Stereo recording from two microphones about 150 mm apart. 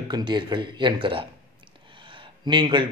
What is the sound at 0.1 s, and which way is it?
A man's voice, 30° right (ahead or behind).